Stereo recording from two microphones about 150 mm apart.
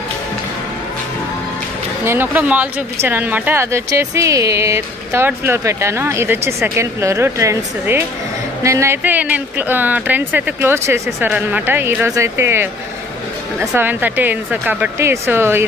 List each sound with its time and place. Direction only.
2.0 s speech: 15° right (ahead or behind)